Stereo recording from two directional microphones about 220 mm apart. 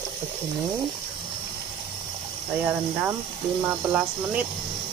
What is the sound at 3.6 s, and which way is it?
Speech, 5° right (ahead or behind).